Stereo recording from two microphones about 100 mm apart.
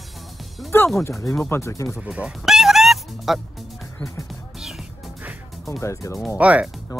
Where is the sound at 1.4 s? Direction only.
25° left (ahead or behind).